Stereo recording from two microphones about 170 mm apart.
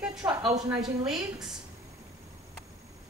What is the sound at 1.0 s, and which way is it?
Speech, 5° right (ahead or behind).